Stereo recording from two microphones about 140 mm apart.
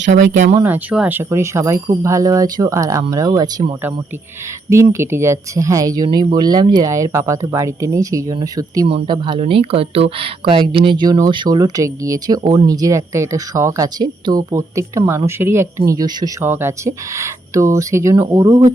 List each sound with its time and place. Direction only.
0.6 s speech: 10° right (ahead or behind); by 3.7 s 30° right (ahead or behind)
4.7 s speech: 20° right (ahead or behind)
8.9 s speech: 35° right (ahead or behind)